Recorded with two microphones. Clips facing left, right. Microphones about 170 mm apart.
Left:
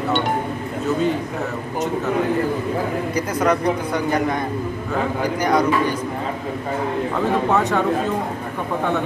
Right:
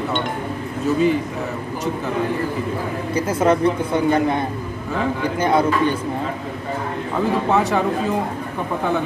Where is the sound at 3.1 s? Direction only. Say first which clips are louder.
Right 4 dB; 25° right (ahead or behind).